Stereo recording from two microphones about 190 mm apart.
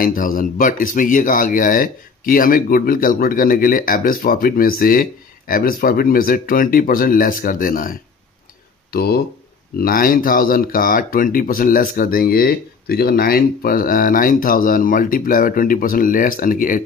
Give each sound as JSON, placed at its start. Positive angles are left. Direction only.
{"t": 0.0, "sound": "speech", "side_deg": 45}
{"t": 8.9, "sound": "speech", "side_deg": 55}